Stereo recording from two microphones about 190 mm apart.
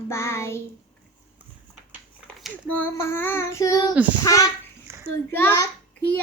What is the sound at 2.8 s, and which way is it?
Child singing, 10° left (ahead or behind).